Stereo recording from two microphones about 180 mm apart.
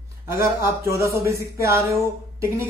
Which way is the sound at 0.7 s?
15° right (ahead or behind).